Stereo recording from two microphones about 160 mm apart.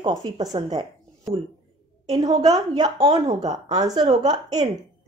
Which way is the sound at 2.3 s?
20° right (ahead or behind).